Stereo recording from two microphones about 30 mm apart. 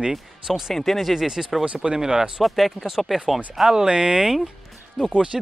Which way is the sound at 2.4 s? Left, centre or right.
Centre.